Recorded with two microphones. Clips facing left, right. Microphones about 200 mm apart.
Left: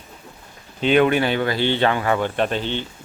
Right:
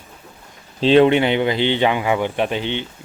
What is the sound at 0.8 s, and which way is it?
Speech, 30° right (ahead or behind).